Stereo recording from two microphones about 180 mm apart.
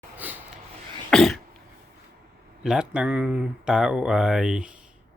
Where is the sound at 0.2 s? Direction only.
10° right (ahead or behind).